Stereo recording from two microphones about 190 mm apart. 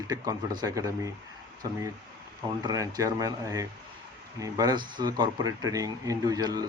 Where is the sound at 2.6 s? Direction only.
20° right (ahead or behind).